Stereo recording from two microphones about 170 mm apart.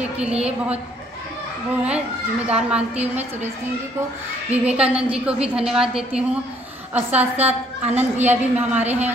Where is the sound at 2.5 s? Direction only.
5° right (ahead or behind).